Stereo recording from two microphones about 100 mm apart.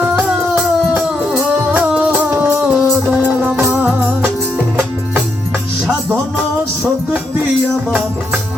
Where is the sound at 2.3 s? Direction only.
20° right (ahead or behind).